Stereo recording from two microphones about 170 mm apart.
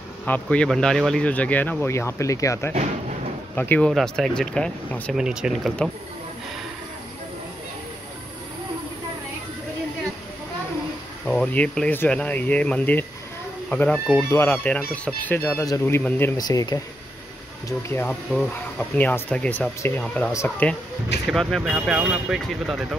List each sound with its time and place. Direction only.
0.2 s speech: 5° left (ahead or behind)
5.1 s speech: 5° right (ahead or behind)
11.2 s speech: 5° left (ahead or behind)